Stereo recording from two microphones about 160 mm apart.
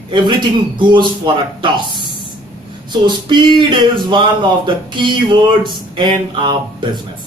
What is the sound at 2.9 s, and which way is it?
Speech, 30° right (ahead or behind).